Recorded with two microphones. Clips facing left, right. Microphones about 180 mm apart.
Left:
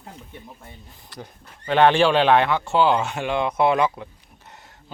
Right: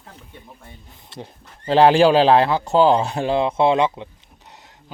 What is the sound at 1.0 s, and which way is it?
Speech, 25° right (ahead or behind).